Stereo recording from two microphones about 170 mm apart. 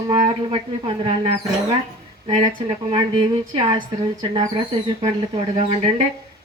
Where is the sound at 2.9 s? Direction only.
30° right (ahead or behind).